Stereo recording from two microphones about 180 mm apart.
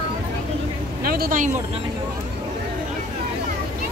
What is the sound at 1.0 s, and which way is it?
Speech, 55° right (ahead or behind).